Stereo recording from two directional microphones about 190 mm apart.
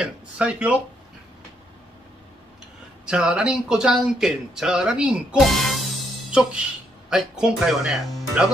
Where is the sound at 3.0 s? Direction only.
5° right (ahead or behind).